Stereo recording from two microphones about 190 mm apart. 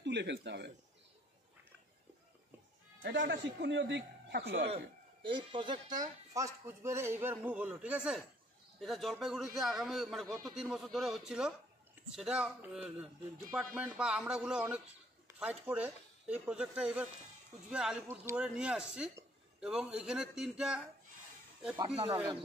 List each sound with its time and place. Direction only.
0.0 s speech: 65° right (ahead or behind)
3.0 s a man's voice: 70° right (ahead or behind)
4.6 s a man's voice: 30° right (ahead or behind); by 20.8 s 5° right (ahead or behind)
21.7 s speech: 30° right (ahead or behind)